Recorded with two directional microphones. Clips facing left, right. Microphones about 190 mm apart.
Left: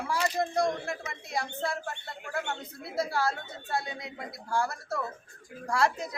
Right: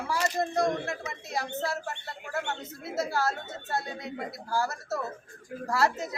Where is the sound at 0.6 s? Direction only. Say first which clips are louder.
Right 1 dB; centre (ahead or behind).